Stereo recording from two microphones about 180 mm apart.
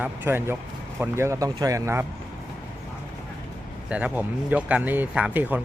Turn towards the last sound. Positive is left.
turn(degrees=-10)  # may be behind; listen again after turning